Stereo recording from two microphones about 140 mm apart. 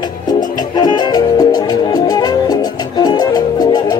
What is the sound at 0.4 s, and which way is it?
Music, 30° left (ahead or behind).